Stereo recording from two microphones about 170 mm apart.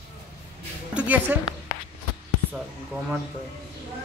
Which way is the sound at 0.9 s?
10° right (ahead or behind).